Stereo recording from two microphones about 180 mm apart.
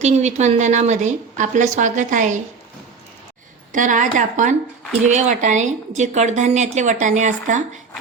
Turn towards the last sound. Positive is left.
turn(degrees=-40)  # may be behind; listen again after turning